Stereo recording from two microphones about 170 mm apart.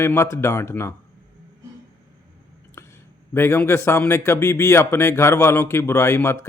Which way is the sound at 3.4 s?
15° left (ahead or behind).